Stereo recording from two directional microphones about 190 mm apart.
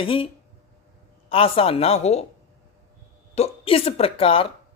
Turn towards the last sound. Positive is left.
turn(degrees=30)  # may be behind; listen again after turning